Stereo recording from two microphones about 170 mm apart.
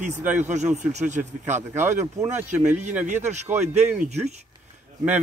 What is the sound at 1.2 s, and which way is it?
Speech, 15° right (ahead or behind).